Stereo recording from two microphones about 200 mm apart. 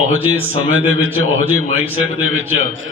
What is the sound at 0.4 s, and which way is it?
A man's voice, 90° right.